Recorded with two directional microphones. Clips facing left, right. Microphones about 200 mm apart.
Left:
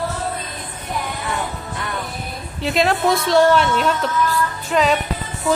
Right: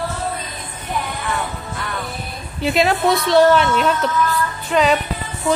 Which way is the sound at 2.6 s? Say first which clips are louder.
Right 1 dB; 5° right (ahead or behind).